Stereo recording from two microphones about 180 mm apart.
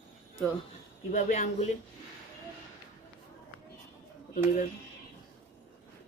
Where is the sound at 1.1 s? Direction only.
45° left (ahead or behind).